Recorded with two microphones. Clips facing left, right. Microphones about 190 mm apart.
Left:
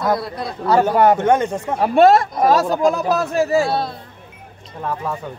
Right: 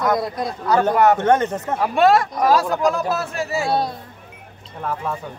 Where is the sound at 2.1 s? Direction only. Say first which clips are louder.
Left 2 dB; 25° left (ahead or behind).